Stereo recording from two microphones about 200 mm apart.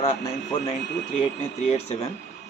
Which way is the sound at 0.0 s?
35° left (ahead or behind).